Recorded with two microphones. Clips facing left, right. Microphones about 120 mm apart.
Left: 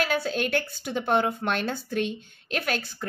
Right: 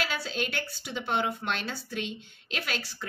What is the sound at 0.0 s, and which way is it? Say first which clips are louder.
A woman's voice: left 6 dB; 50° left (ahead or behind).